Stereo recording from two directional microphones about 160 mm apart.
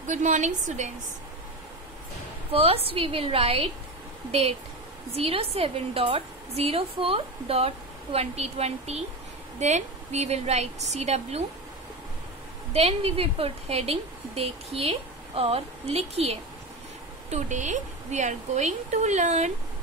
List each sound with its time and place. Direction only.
0.0 s a woman's voice: 50° right (ahead or behind)
2.5 s a woman's voice: 35° right (ahead or behind)
12.7 s a woman's voice: 40° right (ahead or behind)